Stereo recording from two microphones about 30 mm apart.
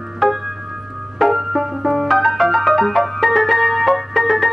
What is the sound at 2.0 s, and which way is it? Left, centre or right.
Music, centre.